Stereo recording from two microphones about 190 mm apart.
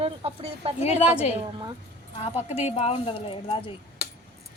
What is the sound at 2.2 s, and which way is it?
Speech, 30° left (ahead or behind).